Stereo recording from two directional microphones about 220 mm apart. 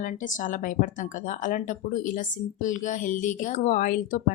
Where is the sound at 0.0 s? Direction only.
35° left (ahead or behind).